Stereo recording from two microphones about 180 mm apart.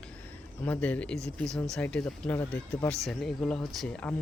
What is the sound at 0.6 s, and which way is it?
Speech, 10° left (ahead or behind).